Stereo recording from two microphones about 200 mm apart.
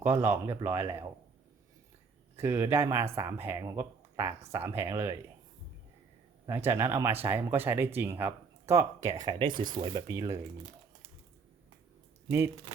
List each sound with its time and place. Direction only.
0.0 s speech: 10° right (ahead or behind)
2.3 s speech: 10° right (ahead or behind)
6.4 s speech: 10° right (ahead or behind)